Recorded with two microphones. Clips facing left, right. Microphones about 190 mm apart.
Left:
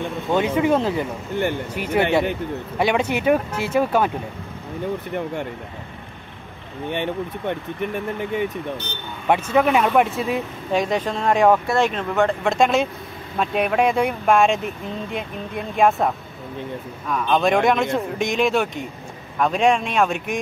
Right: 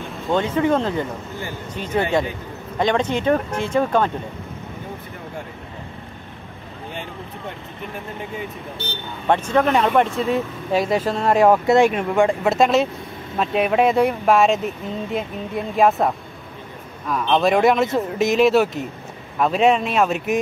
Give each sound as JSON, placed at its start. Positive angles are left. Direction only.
{"t": 0.6, "sound": "speech", "side_deg": 10}
{"t": 6.9, "sound": "speech", "side_deg": 70}
{"t": 9.3, "sound": "speech", "side_deg": 10}
{"t": 17.1, "sound": "speech", "side_deg": 0}